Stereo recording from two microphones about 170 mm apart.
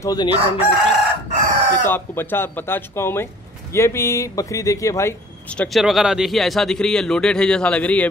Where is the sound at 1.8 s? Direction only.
10° left (ahead or behind).